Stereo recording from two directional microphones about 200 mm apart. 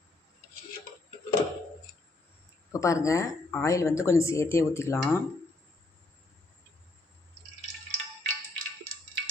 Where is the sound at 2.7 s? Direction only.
15° left (ahead or behind).